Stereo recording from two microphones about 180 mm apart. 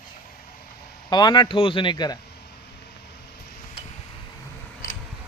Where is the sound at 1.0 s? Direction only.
25° left (ahead or behind).